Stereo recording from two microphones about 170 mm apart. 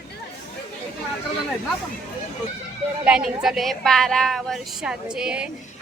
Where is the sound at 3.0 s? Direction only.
5° right (ahead or behind).